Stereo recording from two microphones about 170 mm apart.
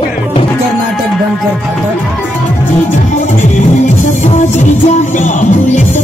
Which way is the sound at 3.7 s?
45° left (ahead or behind).